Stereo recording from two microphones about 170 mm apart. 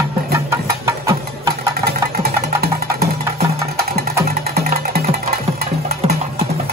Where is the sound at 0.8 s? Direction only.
15° right (ahead or behind).